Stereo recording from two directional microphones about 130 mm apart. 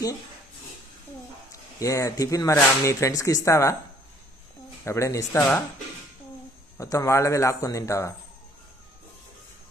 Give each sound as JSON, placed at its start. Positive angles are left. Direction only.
{"t": 1.8, "sound": "speech", "side_deg": 25}
{"t": 4.8, "sound": "speech", "side_deg": 25}
{"t": 6.8, "sound": "speech", "side_deg": 25}